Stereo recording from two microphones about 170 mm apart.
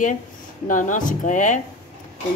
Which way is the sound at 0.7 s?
50° left (ahead or behind).